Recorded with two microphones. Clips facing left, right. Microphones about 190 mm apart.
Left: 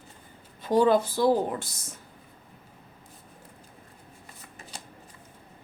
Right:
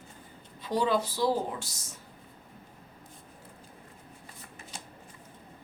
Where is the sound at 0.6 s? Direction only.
50° left (ahead or behind).